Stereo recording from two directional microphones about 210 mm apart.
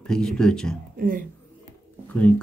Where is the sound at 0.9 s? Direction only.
40° right (ahead or behind).